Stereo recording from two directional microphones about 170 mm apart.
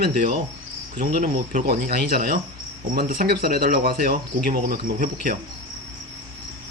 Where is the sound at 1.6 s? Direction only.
60° right (ahead or behind).